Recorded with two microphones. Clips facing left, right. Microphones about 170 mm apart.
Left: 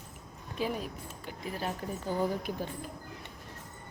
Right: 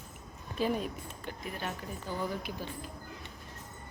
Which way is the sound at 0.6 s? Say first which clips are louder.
Right 2 dB; 5° left (ahead or behind).